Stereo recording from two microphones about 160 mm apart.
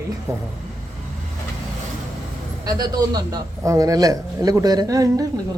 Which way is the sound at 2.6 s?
25° right (ahead or behind).